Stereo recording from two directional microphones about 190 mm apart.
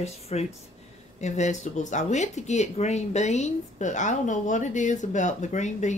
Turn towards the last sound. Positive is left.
turn(degrees=40)  # may be behind; listen again after turning